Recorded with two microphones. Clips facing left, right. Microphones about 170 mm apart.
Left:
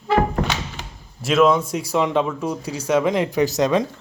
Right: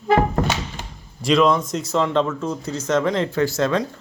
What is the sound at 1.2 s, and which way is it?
Speech, 5° left (ahead or behind).